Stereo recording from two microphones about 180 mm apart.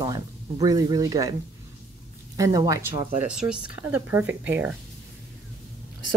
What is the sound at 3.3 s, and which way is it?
Speech, 5° right (ahead or behind).